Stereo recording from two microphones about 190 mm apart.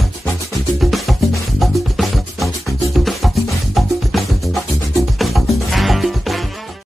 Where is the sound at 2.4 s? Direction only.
15° left (ahead or behind).